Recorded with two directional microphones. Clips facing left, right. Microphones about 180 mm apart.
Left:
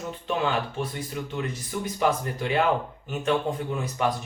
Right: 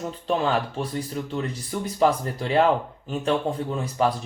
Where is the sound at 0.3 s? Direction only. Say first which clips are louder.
Right 3 dB; 35° right (ahead or behind).